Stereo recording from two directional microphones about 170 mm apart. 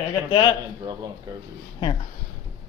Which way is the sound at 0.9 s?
20° right (ahead or behind).